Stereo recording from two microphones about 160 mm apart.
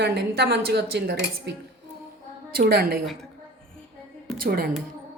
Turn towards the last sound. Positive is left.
turn(degrees=-70)  # may be behind; listen again after turning